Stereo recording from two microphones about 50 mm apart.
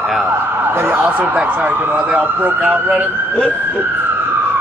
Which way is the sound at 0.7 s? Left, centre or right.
Right.